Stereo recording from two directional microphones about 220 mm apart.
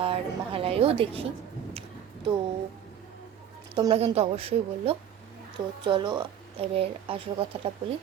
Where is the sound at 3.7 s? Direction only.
20° right (ahead or behind).